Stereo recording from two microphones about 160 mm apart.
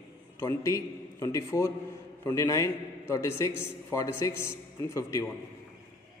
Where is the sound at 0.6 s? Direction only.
20° left (ahead or behind).